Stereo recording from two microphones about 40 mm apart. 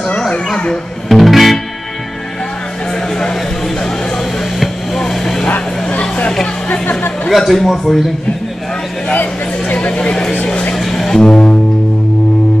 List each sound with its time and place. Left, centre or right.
1.0 s music: centre
3.2 s a sound: centre
4.6 s vehicle: centre
5.9 s vehicle: left
7.2 s a man's voice: centre
9.1 s speech: left
10.8 s music: centre
11.1 s music: centre